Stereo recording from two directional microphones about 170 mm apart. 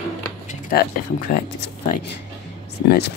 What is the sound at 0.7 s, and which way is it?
Speech, 60° left (ahead or behind).